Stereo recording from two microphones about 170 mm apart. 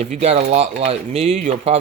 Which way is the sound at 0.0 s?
40° right (ahead or behind).